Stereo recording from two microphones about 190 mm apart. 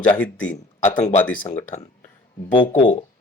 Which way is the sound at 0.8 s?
40° left (ahead or behind).